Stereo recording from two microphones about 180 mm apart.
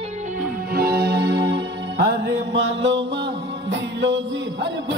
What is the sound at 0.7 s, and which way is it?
Music, 60° right (ahead or behind).